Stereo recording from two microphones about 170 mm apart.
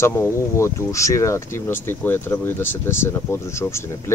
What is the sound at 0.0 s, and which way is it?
Speech, 15° left (ahead or behind).